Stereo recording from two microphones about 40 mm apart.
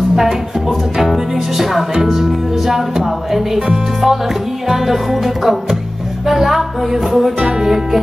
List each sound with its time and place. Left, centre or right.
0.1 s music: centre
3.5 s music: centre